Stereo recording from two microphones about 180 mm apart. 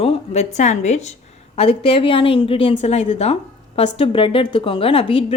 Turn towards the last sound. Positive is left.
turn(degrees=30)  # may be behind; listen again after turning